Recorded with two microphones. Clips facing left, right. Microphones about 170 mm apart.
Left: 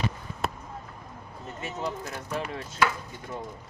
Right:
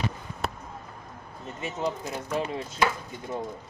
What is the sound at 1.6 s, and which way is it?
Speech, 20° right (ahead or behind).